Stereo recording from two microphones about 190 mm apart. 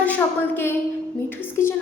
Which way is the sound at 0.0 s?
10° left (ahead or behind).